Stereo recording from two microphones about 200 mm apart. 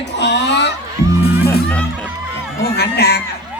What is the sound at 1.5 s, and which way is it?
Music, 5° left (ahead or behind).